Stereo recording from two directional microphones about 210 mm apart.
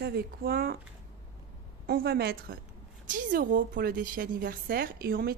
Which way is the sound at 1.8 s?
50° right (ahead or behind).